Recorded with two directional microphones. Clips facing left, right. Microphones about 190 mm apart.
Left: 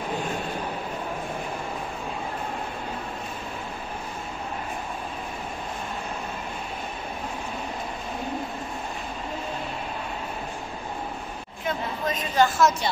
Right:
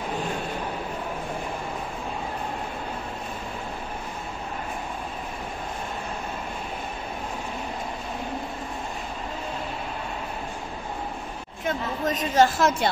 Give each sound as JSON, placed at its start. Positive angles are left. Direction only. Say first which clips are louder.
{"t": 11.6, "sound": "a woman's voice", "louder": "right 2 dB", "side_deg": -45}